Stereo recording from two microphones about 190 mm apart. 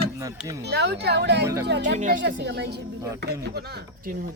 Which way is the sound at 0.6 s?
60° right (ahead or behind).